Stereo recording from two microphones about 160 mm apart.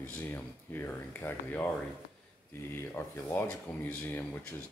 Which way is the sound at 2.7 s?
15° left (ahead or behind).